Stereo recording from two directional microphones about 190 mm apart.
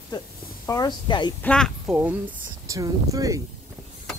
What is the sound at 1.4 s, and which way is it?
Speech, 5° left (ahead or behind).